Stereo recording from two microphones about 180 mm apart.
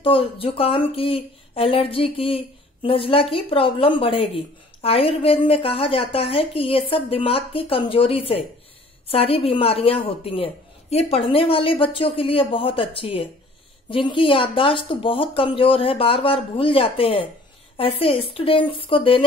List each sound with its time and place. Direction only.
0.0 s speech: 30° left (ahead or behind)